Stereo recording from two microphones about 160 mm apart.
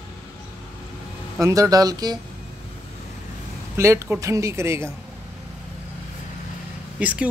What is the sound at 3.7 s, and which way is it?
Speech, 15° right (ahead or behind).